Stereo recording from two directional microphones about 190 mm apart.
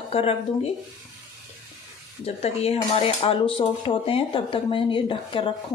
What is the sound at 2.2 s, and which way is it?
Speech, 35° left (ahead or behind).